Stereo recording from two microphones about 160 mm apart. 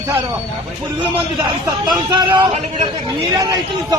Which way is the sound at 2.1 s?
30° right (ahead or behind).